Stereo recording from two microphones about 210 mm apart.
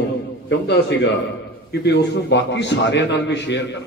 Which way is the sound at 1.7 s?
55° left (ahead or behind).